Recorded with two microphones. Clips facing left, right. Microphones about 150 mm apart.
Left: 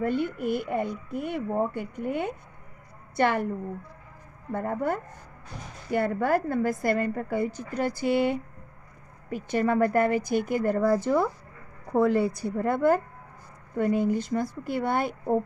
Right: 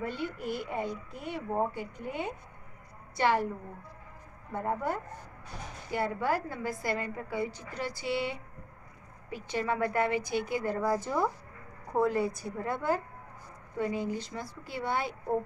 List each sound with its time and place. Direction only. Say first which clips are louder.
0.0 s speech: left 8 dB; 55° left (ahead or behind)
4.5 s a woman's voice: left 4 dB; 55° left (ahead or behind)